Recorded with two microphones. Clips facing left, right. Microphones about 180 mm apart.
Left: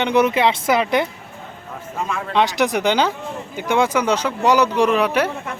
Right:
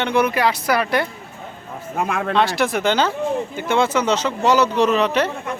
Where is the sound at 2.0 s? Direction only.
60° right (ahead or behind).